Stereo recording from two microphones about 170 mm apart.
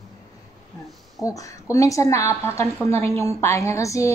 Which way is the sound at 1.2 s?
20° left (ahead or behind).